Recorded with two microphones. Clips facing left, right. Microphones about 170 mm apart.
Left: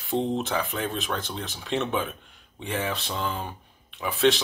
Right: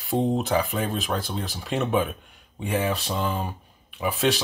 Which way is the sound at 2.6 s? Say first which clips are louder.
Right 4 dB; 10° right (ahead or behind).